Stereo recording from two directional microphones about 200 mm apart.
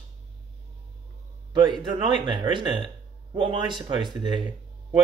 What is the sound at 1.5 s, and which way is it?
Speech, 20° right (ahead or behind).